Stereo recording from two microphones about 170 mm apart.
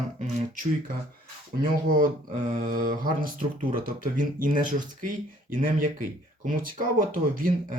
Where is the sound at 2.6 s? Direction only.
55° right (ahead or behind).